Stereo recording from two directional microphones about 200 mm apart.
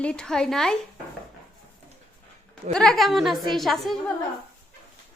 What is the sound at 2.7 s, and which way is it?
A woman's voice, 5° left (ahead or behind).